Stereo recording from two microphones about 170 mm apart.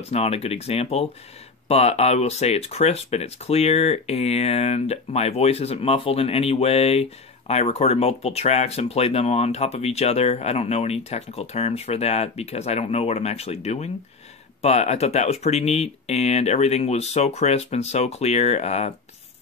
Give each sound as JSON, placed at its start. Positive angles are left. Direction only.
{"t": 0.1, "sound": "speech", "side_deg": 35}